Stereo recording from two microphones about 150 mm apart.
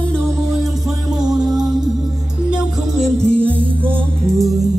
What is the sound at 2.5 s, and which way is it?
Music, 5° right (ahead or behind).